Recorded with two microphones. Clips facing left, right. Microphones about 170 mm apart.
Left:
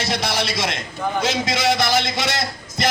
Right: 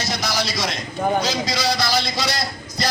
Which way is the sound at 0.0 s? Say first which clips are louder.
Left 2 dB; 25° left (ahead or behind).